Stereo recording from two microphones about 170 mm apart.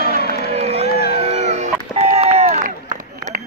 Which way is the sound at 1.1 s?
40° right (ahead or behind).